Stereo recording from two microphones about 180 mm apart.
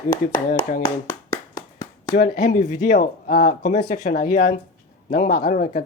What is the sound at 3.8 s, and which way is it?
Speech, 40° left (ahead or behind).